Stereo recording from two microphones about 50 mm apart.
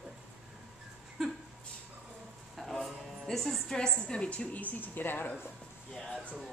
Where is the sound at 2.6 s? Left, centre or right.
Centre.